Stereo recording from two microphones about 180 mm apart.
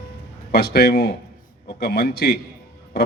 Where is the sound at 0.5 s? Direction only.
60° left (ahead or behind).